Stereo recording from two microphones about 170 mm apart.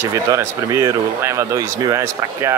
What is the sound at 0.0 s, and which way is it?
Speech, 15° right (ahead or behind).